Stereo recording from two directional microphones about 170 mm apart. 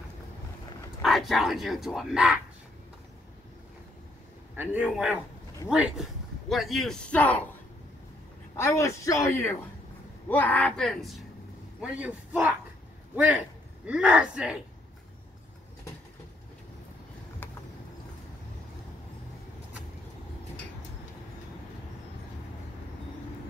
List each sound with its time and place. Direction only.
1.0 s speech: centre (ahead or behind)
4.6 s a man's voice: 10° right (ahead or behind); by 7.4 s 10° left (ahead or behind)
8.5 s a man's voice: 15° left (ahead or behind); by 12.4 s 10° right (ahead or behind)
13.8 s speech: 5° right (ahead or behind)